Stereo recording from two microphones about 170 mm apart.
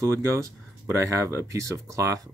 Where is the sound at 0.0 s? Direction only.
15° right (ahead or behind).